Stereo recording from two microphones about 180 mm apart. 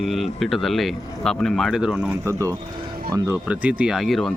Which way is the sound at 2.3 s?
15° right (ahead or behind).